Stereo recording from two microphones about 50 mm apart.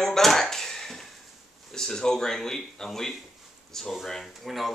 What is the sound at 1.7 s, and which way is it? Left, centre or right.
Speech, centre.